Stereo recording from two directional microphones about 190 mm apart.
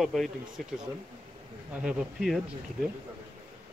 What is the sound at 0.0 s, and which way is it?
Speech, centre (ahead or behind).